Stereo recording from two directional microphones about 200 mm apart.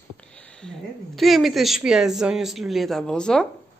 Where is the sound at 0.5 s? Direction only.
5° left (ahead or behind).